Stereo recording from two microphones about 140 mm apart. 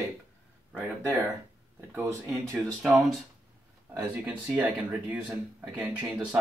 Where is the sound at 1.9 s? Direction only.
15° right (ahead or behind).